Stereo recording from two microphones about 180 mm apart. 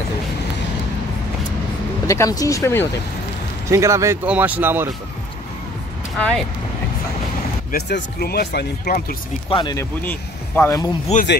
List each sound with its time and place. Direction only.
2.0 s speech: 20° left (ahead or behind)
3.6 s speech: 15° right (ahead or behind)
6.1 s speech: 5° left (ahead or behind)
7.7 s speech: 60° left (ahead or behind)
9.5 s speech: 25° left (ahead or behind)
10.0 s speech: 10° left (ahead or behind)
11.1 s speech: 40° left (ahead or behind)